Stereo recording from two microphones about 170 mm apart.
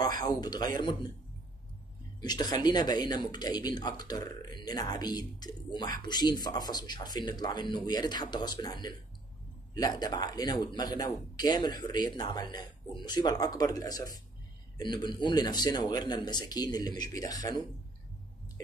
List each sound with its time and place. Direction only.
0.0 s speech: 20° left (ahead or behind)
2.1 s speech: 25° left (ahead or behind)